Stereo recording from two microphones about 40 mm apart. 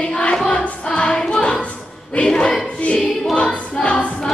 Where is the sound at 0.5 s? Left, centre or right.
Left.